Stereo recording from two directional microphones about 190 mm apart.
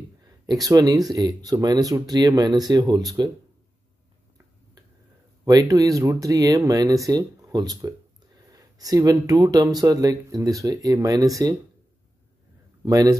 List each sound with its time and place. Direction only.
0.5 s speech: 20° right (ahead or behind)
5.4 s speech: 15° right (ahead or behind)
12.8 s speech: 20° right (ahead or behind)